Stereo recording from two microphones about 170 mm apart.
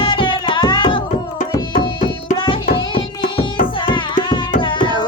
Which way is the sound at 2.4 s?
30° left (ahead or behind).